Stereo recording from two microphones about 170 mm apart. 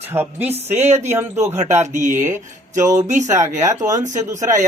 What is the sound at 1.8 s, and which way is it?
Speech, 45° right (ahead or behind).